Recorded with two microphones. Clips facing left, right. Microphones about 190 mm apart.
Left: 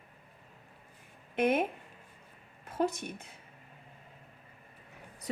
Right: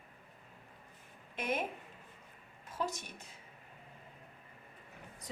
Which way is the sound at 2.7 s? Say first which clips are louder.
Left 8 dB; 55° left (ahead or behind).